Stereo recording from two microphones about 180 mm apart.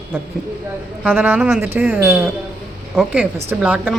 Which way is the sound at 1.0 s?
10° right (ahead or behind).